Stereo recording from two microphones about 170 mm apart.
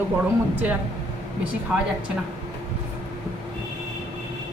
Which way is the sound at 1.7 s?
5° right (ahead or behind).